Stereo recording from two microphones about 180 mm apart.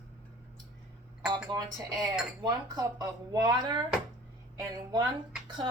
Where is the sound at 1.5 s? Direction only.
20° right (ahead or behind).